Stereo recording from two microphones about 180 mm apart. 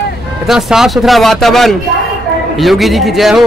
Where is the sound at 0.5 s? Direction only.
Centre (ahead or behind).